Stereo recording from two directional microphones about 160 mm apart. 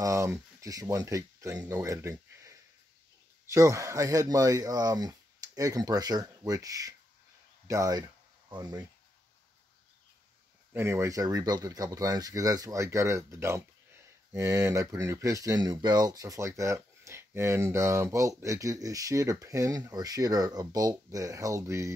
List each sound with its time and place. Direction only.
0.0 s speech: 20° right (ahead or behind)
10.7 s speech: 15° right (ahead or behind)